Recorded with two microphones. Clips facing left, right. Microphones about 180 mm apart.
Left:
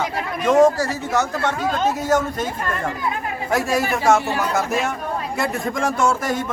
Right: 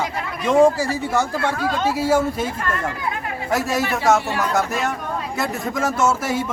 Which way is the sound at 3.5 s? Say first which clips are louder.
Left 1 dB; centre (ahead or behind).